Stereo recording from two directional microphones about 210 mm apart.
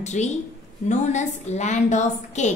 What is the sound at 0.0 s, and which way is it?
A woman's voice, 35° left (ahead or behind).